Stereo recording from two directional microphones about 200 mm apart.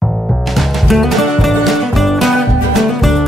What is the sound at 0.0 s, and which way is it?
Music, centre (ahead or behind).